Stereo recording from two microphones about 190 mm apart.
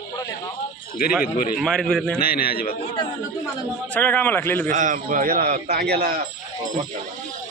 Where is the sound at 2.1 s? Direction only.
50° left (ahead or behind).